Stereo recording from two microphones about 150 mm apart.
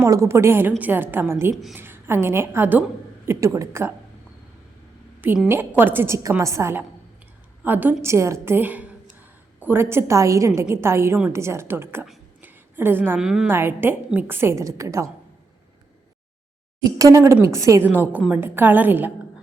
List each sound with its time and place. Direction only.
0.0 s a woman's voice: 20° right (ahead or behind)
5.5 s a woman's voice: 15° right (ahead or behind)
13.5 s a woman's voice: 15° right (ahead or behind)
17.0 s a woman's voice: 20° right (ahead or behind)